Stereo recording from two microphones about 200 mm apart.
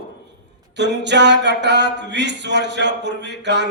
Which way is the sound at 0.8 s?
60° right (ahead or behind).